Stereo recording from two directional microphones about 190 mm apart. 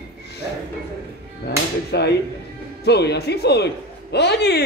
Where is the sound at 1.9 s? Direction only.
60° left (ahead or behind).